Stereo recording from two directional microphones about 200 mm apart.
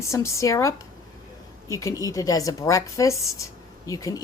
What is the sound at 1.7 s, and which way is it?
Speech, 15° left (ahead or behind).